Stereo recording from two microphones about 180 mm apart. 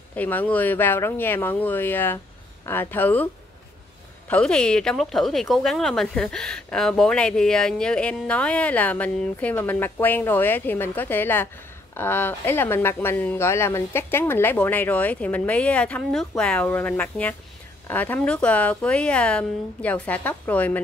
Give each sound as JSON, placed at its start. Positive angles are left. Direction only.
{"t": 0.1, "sound": "speech", "side_deg": 10}
{"t": 4.3, "sound": "speech", "side_deg": 5}